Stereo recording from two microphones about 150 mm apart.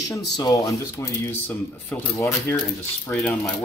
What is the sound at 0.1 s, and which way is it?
Speech, 25° left (ahead or behind).